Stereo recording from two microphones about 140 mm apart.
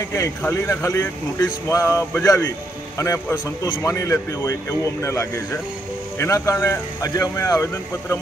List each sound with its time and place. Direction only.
0.1 s speech: 20° left (ahead or behind)